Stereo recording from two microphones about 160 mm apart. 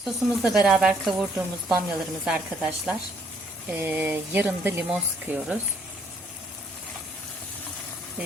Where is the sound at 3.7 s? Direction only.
10° right (ahead or behind).